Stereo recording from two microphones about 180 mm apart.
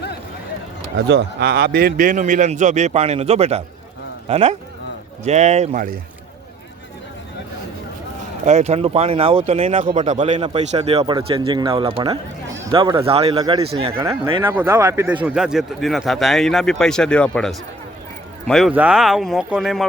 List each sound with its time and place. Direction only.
0.9 s a man's voice: 70° right (ahead or behind); by 5.9 s 45° right (ahead or behind)
8.4 s a man's voice: 40° right (ahead or behind)
14.4 s a man's voice: 10° right (ahead or behind)